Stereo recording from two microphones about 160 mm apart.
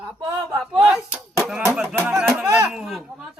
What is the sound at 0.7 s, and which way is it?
Music, 5° right (ahead or behind).